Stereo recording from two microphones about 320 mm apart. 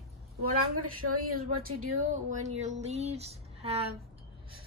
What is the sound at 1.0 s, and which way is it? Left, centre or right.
A woman's voice, right.